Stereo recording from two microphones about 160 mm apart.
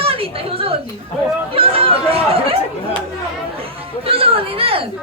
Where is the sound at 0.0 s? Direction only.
35° right (ahead or behind).